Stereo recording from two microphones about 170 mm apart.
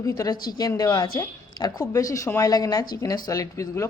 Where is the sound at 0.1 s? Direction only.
20° left (ahead or behind).